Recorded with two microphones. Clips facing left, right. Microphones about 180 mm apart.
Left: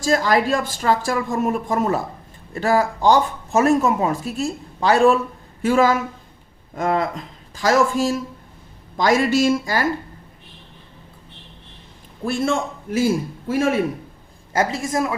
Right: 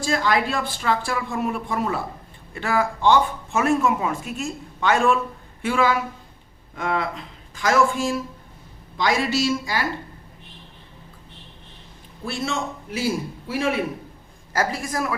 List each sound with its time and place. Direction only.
0.0 s speech: 40° left (ahead or behind)
12.2 s speech: 50° left (ahead or behind)
14.5 s a woman's voice: 25° left (ahead or behind)